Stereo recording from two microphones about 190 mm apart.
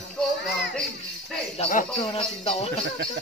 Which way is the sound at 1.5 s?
35° left (ahead or behind).